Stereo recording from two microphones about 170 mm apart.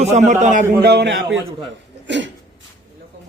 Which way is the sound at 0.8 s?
75° right (ahead or behind).